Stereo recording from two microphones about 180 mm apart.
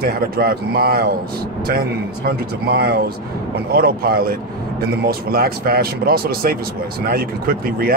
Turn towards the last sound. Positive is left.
turn(degrees=-55)  # may be behind; listen again after turning